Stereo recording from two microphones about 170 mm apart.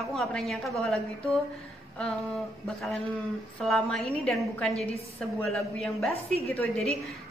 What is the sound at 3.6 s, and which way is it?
A woman's voice, centre (ahead or behind).